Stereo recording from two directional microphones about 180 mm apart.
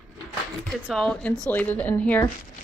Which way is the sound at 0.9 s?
Centre (ahead or behind).